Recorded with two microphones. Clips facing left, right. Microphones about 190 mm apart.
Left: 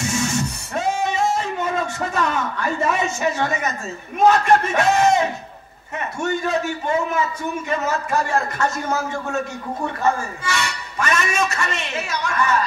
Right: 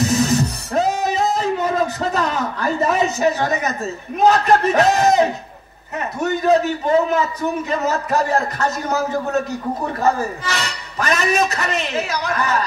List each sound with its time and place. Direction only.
0.0 s music: 35° right (ahead or behind)
5.9 s a man's voice: 40° right (ahead or behind)